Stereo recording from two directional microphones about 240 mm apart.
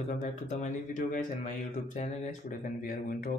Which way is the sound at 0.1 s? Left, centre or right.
Left.